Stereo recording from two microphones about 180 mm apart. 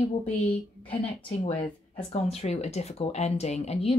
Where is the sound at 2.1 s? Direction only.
35° left (ahead or behind).